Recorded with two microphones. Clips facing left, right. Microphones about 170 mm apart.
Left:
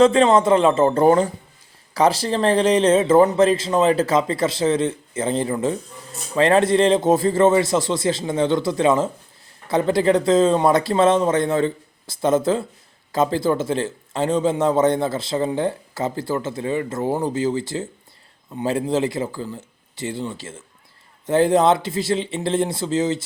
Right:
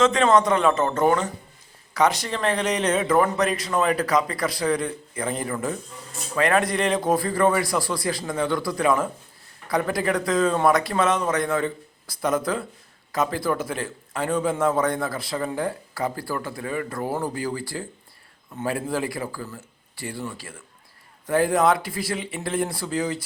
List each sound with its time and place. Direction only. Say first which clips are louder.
0.0 s a man's voice: left 4 dB; 30° left (ahead or behind)